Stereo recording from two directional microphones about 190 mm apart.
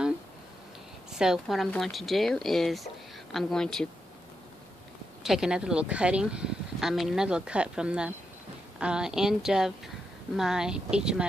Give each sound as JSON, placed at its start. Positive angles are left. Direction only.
{"t": 1.1, "sound": "speech", "side_deg": -5}
{"t": 5.2, "sound": "speech", "side_deg": -5}